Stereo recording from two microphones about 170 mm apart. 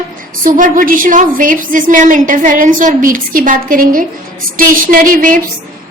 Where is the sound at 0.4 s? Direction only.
50° right (ahead or behind).